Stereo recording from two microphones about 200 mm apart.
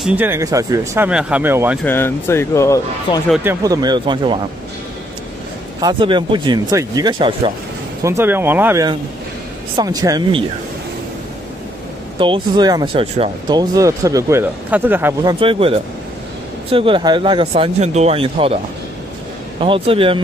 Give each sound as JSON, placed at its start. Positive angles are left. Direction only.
{"t": 0.0, "sound": "speech", "side_deg": -10}
{"t": 1.8, "sound": "speech", "side_deg": 10}
{"t": 3.4, "sound": "speech", "side_deg": -20}
{"t": 5.8, "sound": "speech", "side_deg": -20}
{"t": 8.0, "sound": "speech", "side_deg": -15}
{"t": 12.2, "sound": "speech", "side_deg": -25}
{"t": 15.3, "sound": "speech", "side_deg": -25}
{"t": 19.6, "sound": "speech", "side_deg": -25}